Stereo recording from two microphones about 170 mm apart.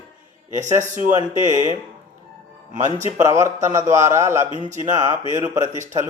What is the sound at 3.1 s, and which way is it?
Speech, 15° right (ahead or behind).